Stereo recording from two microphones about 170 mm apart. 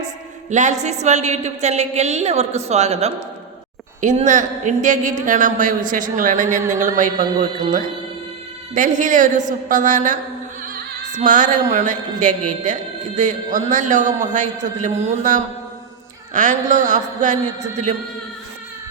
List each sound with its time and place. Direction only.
0.5 s a woman's voice: 45° right (ahead or behind)
8.7 s a man's voice: 50° right (ahead or behind)